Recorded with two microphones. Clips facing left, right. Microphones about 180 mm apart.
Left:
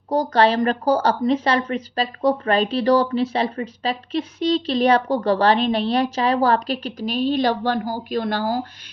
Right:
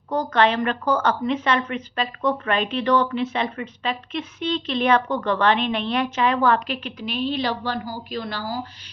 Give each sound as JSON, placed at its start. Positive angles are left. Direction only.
{"t": 0.1, "sound": "a woman's voice", "side_deg": 35}